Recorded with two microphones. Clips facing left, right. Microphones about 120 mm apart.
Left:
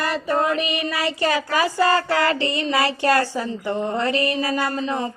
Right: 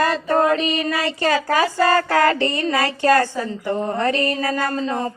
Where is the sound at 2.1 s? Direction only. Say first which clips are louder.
Right 3 dB; 45° right (ahead or behind).